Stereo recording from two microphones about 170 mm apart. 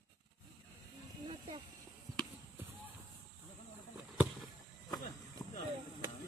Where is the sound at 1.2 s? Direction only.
30° right (ahead or behind).